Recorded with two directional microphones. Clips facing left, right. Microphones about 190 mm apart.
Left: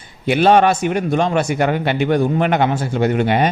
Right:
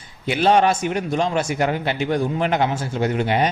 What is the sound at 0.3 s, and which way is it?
A man's voice, 60° left (ahead or behind).